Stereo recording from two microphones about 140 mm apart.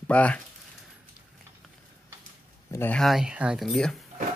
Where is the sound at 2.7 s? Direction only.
15° left (ahead or behind).